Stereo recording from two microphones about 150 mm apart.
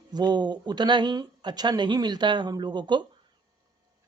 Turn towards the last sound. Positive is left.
turn(degrees=-30)  # may be behind; listen again after turning